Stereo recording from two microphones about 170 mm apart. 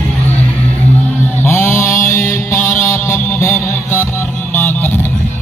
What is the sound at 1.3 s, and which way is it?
Mantra, 15° left (ahead or behind).